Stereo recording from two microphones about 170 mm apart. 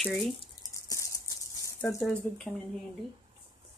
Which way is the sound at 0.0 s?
5° left (ahead or behind).